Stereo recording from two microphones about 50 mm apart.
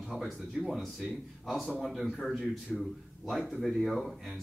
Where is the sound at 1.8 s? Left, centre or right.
Centre.